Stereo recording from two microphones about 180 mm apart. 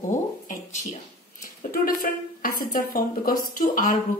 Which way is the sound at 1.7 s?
55° left (ahead or behind).